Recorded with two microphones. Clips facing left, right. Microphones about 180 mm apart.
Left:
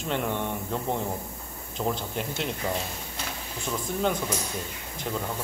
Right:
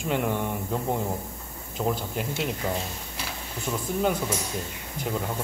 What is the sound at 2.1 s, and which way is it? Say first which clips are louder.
Speech: right 2 dB; 5° right (ahead or behind).